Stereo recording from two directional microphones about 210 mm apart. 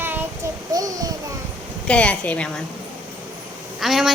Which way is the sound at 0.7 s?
15° right (ahead or behind).